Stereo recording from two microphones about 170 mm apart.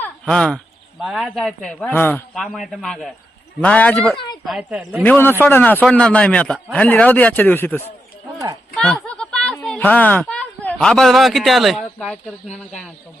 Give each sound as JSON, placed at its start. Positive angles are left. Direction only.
{"t": 0.0, "sound": "speech", "side_deg": 5}
{"t": 4.4, "sound": "speech", "side_deg": -5}
{"t": 5.0, "sound": "speech", "side_deg": 10}
{"t": 8.7, "sound": "a sound", "side_deg": 0}
{"t": 10.8, "sound": "speech", "side_deg": 0}